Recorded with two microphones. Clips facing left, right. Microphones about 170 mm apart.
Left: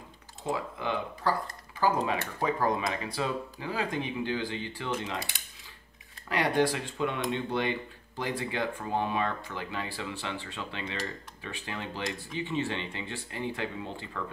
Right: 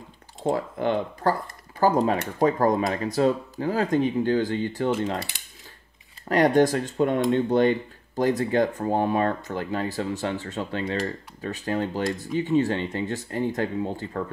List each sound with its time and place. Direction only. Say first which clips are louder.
0.4 s speech: right 8 dB; 50° right (ahead or behind)
6.2 s speech: right 8 dB; 45° right (ahead or behind)